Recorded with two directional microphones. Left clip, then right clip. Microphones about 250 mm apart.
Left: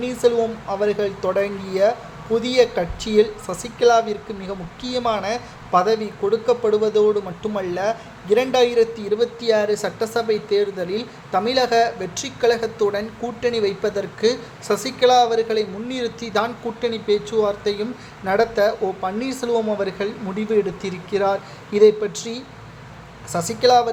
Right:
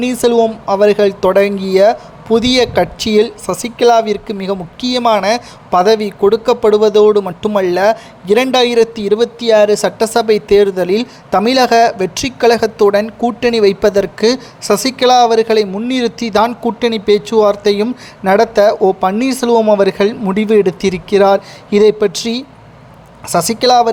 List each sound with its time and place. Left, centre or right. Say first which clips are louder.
0.0 s speech: right 7 dB; right